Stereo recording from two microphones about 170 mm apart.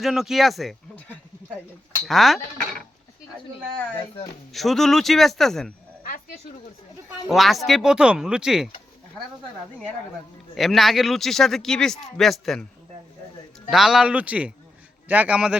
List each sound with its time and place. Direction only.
0.0 s speech: centre (ahead or behind)
4.5 s speech: centre (ahead or behind)
6.0 s a sound: 50° left (ahead or behind)
7.3 s speech: centre (ahead or behind)
10.5 s speech: centre (ahead or behind)
13.7 s speech: centre (ahead or behind)